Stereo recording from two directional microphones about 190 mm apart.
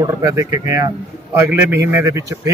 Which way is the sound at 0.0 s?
20° right (ahead or behind).